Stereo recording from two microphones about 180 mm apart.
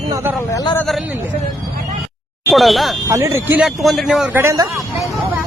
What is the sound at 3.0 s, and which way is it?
Speech, 15° right (ahead or behind).